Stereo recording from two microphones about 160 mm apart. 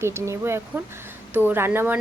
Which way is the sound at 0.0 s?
15° right (ahead or behind).